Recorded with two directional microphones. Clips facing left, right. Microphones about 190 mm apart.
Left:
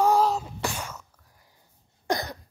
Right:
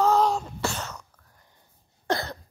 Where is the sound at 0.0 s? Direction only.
10° left (ahead or behind).